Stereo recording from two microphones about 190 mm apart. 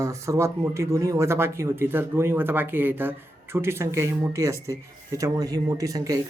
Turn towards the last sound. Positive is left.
turn(degrees=-20)  # may be behind; listen again after turning